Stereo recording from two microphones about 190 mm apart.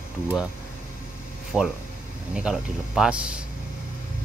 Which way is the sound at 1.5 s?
Centre (ahead or behind).